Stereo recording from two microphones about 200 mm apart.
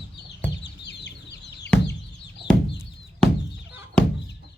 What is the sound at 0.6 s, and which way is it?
Chicken, 60° left (ahead or behind).